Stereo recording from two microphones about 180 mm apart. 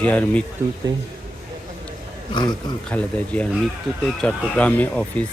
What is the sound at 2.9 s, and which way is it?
Speech, 5° left (ahead or behind).